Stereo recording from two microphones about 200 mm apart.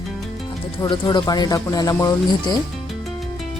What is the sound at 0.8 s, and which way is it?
Speech, 20° left (ahead or behind).